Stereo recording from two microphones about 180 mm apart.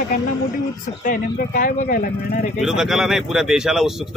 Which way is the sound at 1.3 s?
50° left (ahead or behind).